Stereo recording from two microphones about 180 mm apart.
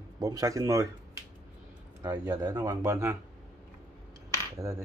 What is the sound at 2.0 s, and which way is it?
Speech, 20° right (ahead or behind).